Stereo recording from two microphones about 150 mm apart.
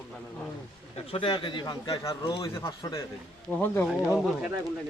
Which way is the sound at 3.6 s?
15° left (ahead or behind).